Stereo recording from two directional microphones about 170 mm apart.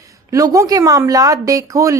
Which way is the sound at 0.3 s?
20° right (ahead or behind).